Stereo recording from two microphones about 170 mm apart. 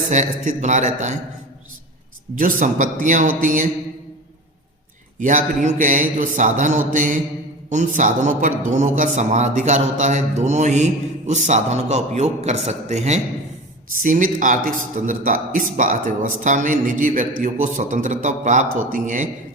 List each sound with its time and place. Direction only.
0.1 s a man's voice: 45° right (ahead or behind)
2.4 s a man's voice: 50° right (ahead or behind)
5.6 s a man's voice: 50° right (ahead or behind)
13.9 s a man's voice: 50° right (ahead or behind)